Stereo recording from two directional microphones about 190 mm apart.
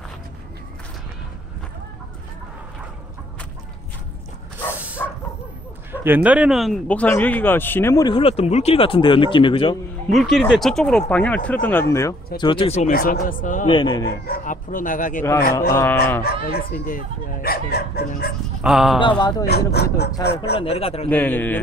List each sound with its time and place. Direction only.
5.0 s bow-wow: 10° left (ahead or behind)
5.9 s speech: 10° right (ahead or behind); by 9.8 s 25° left (ahead or behind)
10.0 s speech: centre (ahead or behind)
12.4 s speech: 25° left (ahead or behind)
12.9 s speech: 50° left (ahead or behind)
13.7 s speech: 25° left (ahead or behind)
14.0 s speech: 50° left (ahead or behind)
15.7 s speech: 15° left (ahead or behind)
16.3 s speech: 55° left (ahead or behind)
18.6 s speech: centre (ahead or behind)
18.9 s speech: 25° left (ahead or behind)
19.4 s speech: 60° left (ahead or behind)
20.5 s speech: 30° left (ahead or behind)
21.1 s speech: 10° left (ahead or behind)